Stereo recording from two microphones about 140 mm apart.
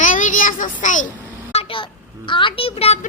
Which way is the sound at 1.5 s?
35° left (ahead or behind).